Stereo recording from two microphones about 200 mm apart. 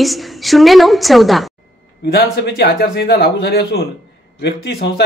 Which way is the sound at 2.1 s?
50° left (ahead or behind).